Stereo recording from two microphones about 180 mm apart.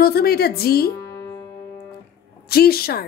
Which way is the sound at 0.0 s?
60° left (ahead or behind).